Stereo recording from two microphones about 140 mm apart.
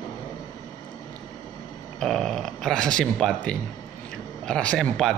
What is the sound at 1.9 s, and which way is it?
Speech, 5° left (ahead or behind).